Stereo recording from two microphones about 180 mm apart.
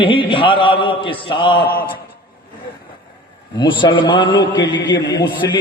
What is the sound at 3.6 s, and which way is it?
A man's voice, 25° left (ahead or behind).